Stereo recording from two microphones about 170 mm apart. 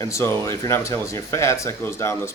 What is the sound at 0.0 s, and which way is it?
Speech, 15° left (ahead or behind).